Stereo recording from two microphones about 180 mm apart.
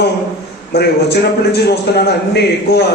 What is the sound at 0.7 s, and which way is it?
A man's voice, 65° left (ahead or behind).